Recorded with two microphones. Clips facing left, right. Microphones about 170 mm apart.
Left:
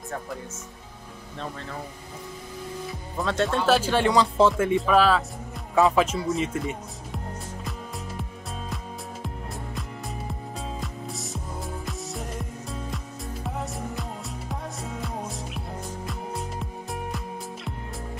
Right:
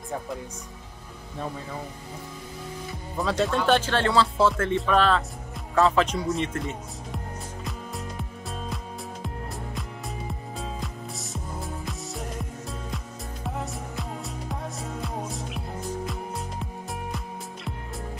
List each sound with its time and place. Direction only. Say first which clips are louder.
2.9 s speech: right 2 dB; centre (ahead or behind)
3.9 s music: left 2 dB; 15° left (ahead or behind)
4.7 s speech: left 2 dB; 5° left (ahead or behind)
8.2 s music: right 1 dB; centre (ahead or behind)
9.8 s music: even; centre (ahead or behind)